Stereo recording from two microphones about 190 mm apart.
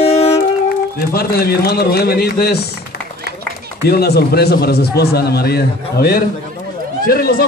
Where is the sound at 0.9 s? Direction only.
55° left (ahead or behind).